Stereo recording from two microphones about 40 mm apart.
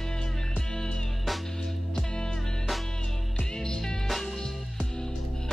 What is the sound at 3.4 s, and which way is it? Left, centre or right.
Music, centre.